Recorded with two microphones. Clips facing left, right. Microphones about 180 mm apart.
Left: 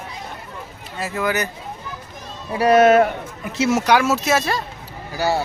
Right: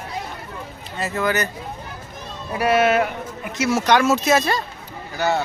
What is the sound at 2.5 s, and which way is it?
Speech, 40° left (ahead or behind).